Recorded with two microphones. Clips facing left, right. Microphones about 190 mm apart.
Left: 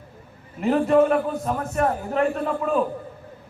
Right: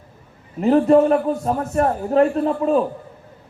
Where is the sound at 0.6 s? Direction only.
35° right (ahead or behind).